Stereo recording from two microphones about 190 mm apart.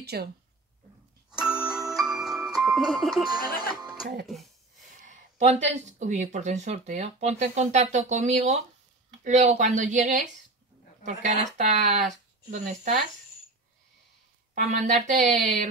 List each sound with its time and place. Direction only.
0.0 s a woman's voice: 60° right (ahead or behind)
1.3 s music: 5° right (ahead or behind)
3.3 s speech: 20° right (ahead or behind)
5.0 s speech: 40° right (ahead or behind)
14.5 s speech: 40° right (ahead or behind)